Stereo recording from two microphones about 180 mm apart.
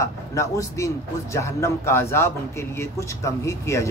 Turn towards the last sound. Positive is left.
turn(degrees=15)  # may be behind; listen again after turning